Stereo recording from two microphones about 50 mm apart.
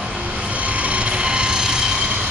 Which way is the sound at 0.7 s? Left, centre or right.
Right.